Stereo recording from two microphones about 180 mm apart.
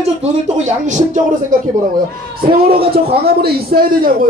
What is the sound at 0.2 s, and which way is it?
Speech, 40° right (ahead or behind).